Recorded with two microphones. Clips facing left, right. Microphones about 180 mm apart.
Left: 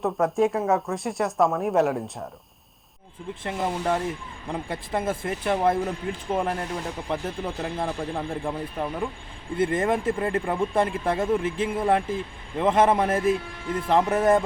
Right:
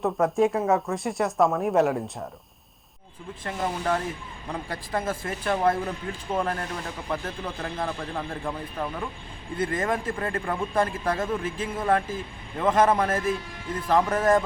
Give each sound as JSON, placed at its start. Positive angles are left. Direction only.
{"t": 0.0, "sound": "speech", "side_deg": 0}
{"t": 3.6, "sound": "speech", "side_deg": 15}
{"t": 9.6, "sound": "speech", "side_deg": 25}